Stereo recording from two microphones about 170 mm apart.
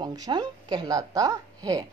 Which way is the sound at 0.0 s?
25° right (ahead or behind).